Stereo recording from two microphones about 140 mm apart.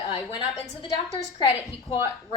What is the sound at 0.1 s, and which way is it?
A woman's voice, 40° left (ahead or behind).